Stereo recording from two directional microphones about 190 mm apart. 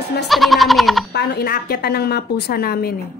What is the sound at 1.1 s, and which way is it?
A woman's voice, 50° left (ahead or behind).